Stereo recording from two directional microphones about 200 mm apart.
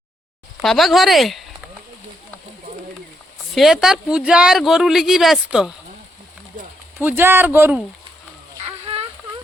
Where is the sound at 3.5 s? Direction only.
Centre (ahead or behind).